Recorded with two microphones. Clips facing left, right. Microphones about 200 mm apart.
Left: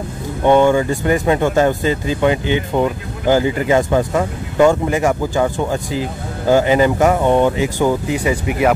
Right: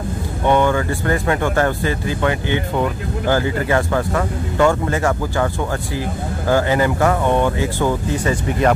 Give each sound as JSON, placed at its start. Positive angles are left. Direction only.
{"t": 0.5, "sound": "speech", "side_deg": 15}